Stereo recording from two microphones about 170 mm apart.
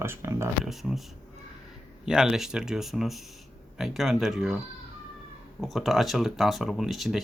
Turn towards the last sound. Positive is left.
turn(degrees=0)  # may be behind; listen again after turning